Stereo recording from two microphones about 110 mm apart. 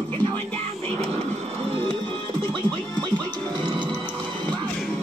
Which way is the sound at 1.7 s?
55° right (ahead or behind).